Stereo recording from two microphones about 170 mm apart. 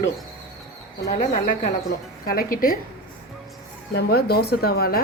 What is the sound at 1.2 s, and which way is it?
Speech, 45° left (ahead or behind).